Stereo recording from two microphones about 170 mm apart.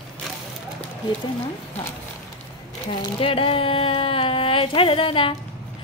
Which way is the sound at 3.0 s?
30° left (ahead or behind).